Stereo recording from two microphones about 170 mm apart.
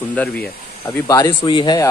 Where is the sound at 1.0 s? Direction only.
20° left (ahead or behind).